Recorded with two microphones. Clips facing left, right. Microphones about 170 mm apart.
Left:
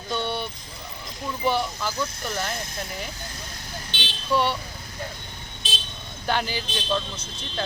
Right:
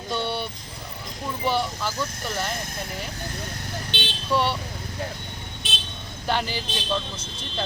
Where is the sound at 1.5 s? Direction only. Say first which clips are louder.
Even; centre (ahead or behind).